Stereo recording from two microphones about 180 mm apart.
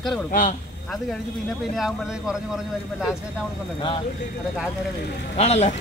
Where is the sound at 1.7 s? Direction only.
5° right (ahead or behind).